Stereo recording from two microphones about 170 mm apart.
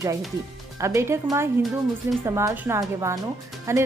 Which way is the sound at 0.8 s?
15° right (ahead or behind).